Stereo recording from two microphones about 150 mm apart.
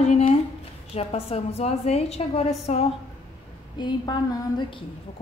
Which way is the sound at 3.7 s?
30° left (ahead or behind).